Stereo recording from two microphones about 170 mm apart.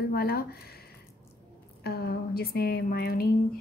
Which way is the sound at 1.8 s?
65° left (ahead or behind).